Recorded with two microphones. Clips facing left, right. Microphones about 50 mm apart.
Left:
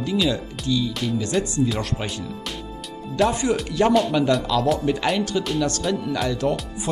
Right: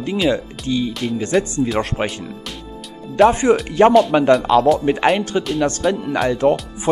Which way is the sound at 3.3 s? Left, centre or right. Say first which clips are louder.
Right 7 dB; right.